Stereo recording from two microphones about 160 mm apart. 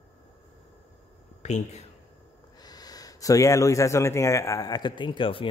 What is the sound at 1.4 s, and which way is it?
Speech, 45° left (ahead or behind).